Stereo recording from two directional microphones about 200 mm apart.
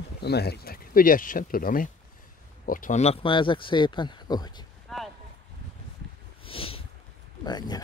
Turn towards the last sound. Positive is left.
turn(degrees=20)  # may be behind; listen again after turning